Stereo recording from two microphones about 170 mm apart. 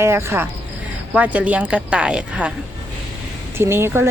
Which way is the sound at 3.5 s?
15° right (ahead or behind).